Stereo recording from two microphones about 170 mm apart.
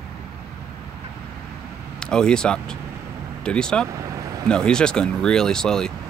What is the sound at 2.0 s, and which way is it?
Speech, 5° left (ahead or behind).